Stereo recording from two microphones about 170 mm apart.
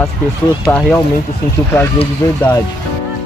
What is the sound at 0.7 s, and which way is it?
Speech, centre (ahead or behind).